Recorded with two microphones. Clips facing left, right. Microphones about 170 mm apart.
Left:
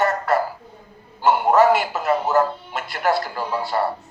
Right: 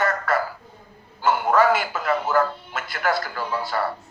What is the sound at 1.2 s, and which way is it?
Speech, centre (ahead or behind).